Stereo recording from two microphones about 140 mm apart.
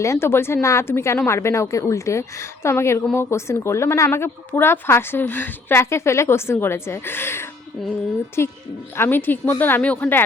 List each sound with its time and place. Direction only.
0.0 s a woman's voice: 20° left (ahead or behind)